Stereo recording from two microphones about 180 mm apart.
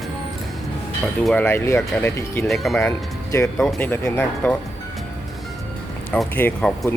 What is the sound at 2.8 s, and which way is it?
Speech, 15° left (ahead or behind).